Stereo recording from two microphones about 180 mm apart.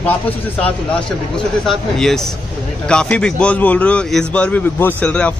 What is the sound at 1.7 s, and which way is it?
A man's voice, centre (ahead or behind).